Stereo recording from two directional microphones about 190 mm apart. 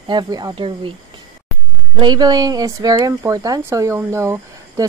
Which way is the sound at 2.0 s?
20° right (ahead or behind).